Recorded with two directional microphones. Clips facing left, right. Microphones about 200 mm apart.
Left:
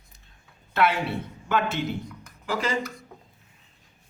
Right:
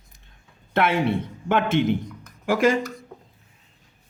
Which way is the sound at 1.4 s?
50° right (ahead or behind).